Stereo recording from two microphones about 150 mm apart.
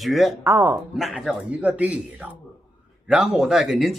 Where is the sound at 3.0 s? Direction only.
5° right (ahead or behind).